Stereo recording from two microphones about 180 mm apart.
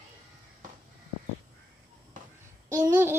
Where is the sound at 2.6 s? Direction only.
15° right (ahead or behind).